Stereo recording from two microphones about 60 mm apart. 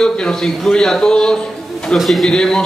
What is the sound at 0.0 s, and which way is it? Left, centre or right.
A man's voice, centre.